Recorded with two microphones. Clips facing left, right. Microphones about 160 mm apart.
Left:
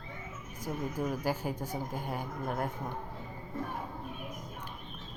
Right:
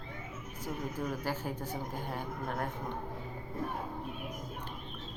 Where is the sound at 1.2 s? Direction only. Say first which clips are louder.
Left 3 dB; 10° left (ahead or behind).